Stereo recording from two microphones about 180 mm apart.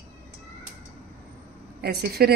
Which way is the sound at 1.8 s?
60° right (ahead or behind).